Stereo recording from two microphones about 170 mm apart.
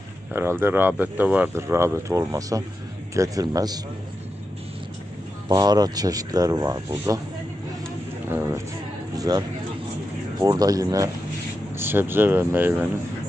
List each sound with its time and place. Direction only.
0.3 s speech: 15° right (ahead or behind)
5.5 s speech: 25° right (ahead or behind)
8.3 s speech: 10° right (ahead or behind)
9.1 s a sound: 20° right (ahead or behind)
10.4 s speech: 25° right (ahead or behind)